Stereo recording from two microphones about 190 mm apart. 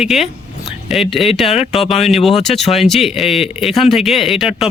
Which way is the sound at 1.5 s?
35° left (ahead or behind).